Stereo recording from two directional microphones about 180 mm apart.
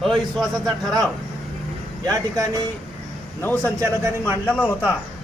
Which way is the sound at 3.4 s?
10° left (ahead or behind).